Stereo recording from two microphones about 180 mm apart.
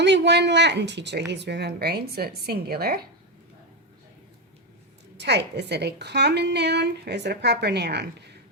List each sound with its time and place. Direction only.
0.0 s a woman's voice: 70° right (ahead or behind)
5.2 s a woman's voice: 70° right (ahead or behind)